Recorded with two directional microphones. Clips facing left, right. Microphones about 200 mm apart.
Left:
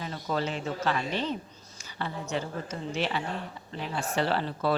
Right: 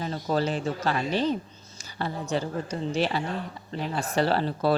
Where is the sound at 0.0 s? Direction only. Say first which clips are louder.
Right 4 dB; 35° right (ahead or behind).